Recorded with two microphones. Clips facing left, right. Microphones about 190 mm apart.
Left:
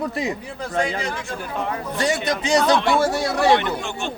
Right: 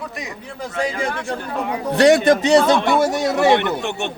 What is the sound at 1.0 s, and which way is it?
Speech, 60° right (ahead or behind).